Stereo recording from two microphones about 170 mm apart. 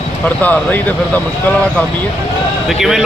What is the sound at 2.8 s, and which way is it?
Speech, centre (ahead or behind).